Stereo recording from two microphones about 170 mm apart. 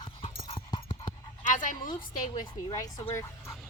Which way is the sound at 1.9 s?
25° left (ahead or behind).